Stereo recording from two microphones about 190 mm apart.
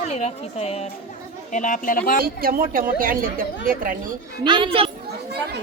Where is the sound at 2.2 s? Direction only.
50° right (ahead or behind).